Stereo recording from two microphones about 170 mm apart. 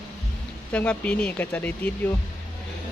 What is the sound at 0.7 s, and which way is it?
Speech, 5° left (ahead or behind).